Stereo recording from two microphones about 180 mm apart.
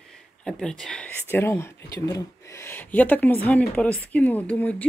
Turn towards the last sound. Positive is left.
turn(degrees=10)  # may be behind; listen again after turning